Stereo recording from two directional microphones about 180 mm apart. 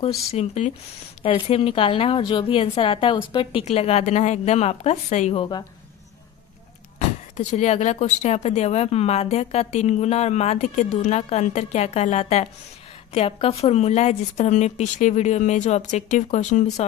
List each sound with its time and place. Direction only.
0.3 s a woman's voice: 40° left (ahead or behind)
7.3 s a woman's voice: 40° left (ahead or behind)